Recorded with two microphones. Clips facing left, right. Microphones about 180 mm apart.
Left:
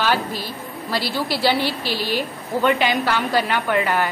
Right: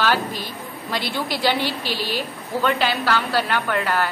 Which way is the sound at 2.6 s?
10° left (ahead or behind).